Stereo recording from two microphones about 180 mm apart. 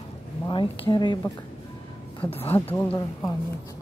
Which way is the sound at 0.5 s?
25° left (ahead or behind).